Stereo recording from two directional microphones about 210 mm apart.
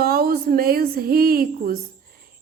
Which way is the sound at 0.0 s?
45° right (ahead or behind).